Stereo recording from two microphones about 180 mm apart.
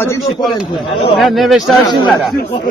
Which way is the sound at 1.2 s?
Centre (ahead or behind).